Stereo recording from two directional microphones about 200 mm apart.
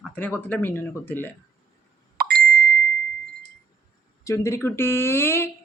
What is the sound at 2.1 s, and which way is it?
Plop, 50° right (ahead or behind).